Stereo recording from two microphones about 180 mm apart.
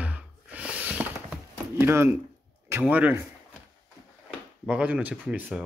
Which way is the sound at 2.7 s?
10° right (ahead or behind).